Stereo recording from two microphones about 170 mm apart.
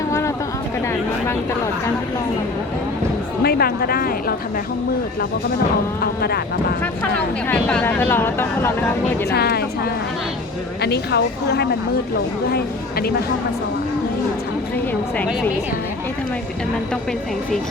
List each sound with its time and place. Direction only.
0.1 s vehicle: 15° left (ahead or behind)
3.4 s a woman's voice: 65° left (ahead or behind)
7.0 s speech: 10° left (ahead or behind)
9.3 s a woman's voice: 70° left (ahead or behind)
12.5 s a woman's voice: 65° left (ahead or behind)